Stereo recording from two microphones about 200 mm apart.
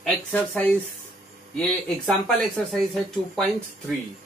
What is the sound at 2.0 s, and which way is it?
Speech, 5° left (ahead or behind).